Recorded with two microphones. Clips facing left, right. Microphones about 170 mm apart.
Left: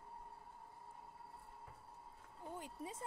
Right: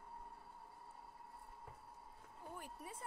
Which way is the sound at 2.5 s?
25° left (ahead or behind).